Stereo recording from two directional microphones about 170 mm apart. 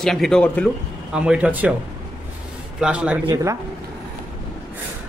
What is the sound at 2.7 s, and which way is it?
Speech, 5° right (ahead or behind).